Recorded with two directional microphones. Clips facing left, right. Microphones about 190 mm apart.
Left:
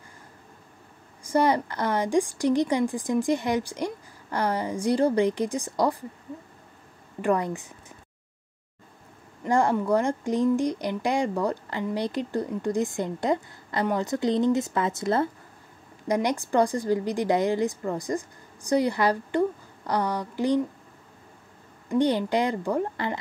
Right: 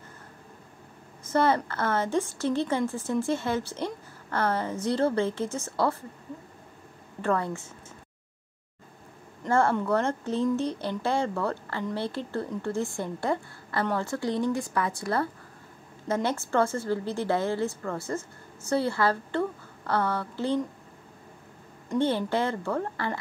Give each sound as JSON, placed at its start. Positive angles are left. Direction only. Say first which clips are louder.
{"t": 1.2, "sound": "speech", "louder": "left 2 dB", "side_deg": 15}
{"t": 7.2, "sound": "speech", "louder": "left 3 dB", "side_deg": 15}
{"t": 9.4, "sound": "speech", "louder": "left 1 dB", "side_deg": 15}
{"t": 21.9, "sound": "speech", "louder": "left 3 dB", "side_deg": 15}